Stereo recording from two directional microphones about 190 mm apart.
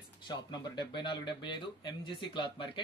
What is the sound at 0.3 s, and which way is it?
Speech, 25° left (ahead or behind).